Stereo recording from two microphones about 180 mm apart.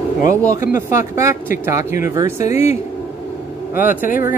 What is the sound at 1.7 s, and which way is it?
Speech, 15° right (ahead or behind).